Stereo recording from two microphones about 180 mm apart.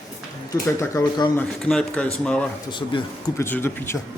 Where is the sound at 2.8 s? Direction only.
20° left (ahead or behind).